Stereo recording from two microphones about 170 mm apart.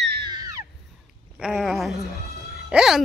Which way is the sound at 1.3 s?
5° right (ahead or behind).